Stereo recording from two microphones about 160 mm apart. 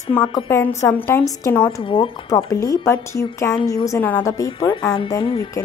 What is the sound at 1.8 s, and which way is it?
Speech, 35° left (ahead or behind).